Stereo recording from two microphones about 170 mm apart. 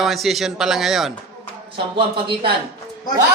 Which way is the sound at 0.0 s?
Centre (ahead or behind).